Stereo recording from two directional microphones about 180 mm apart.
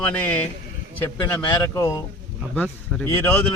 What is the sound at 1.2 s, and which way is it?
A man's voice, 25° left (ahead or behind).